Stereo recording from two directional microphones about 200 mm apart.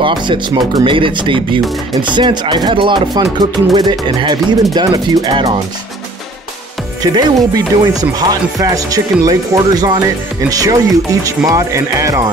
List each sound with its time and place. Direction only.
0.0 s speech: 25° right (ahead or behind)
7.0 s speech: 20° right (ahead or behind)